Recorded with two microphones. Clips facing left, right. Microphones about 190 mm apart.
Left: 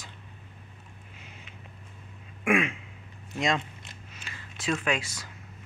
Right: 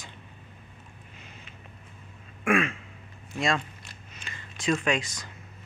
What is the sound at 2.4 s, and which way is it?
Throat clearing, 15° left (ahead or behind).